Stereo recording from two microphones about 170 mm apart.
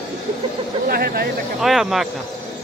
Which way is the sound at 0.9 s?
60° right (ahead or behind).